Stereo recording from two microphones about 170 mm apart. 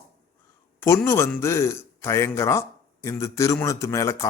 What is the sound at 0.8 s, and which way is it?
A man's voice, 15° left (ahead or behind).